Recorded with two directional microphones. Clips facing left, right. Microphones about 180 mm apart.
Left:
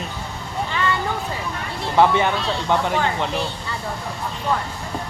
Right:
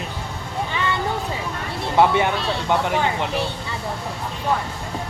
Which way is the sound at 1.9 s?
15° right (ahead or behind).